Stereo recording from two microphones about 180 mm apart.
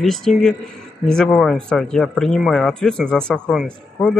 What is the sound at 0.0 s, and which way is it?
Speech, centre (ahead or behind).